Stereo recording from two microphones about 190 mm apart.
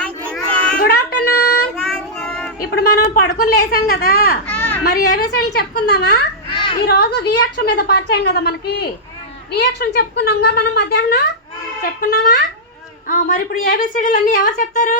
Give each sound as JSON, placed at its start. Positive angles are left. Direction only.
{"t": 0.0, "sound": "children playing", "side_deg": 5}
{"t": 0.8, "sound": "a sound", "side_deg": 55}
{"t": 1.7, "sound": "child singing", "side_deg": 0}
{"t": 2.6, "sound": "a woman's voice", "side_deg": 55}
{"t": 4.4, "sound": "a sound", "side_deg": 10}
{"t": 4.8, "sound": "a woman's voice", "side_deg": 55}
{"t": 6.5, "sound": "children playing", "side_deg": 25}
{"t": 6.8, "sound": "a woman's voice", "side_deg": 55}
{"t": 11.8, "sound": "a woman's voice", "side_deg": 45}